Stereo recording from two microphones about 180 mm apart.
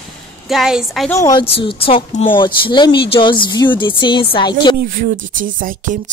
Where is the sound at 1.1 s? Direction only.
20° left (ahead or behind).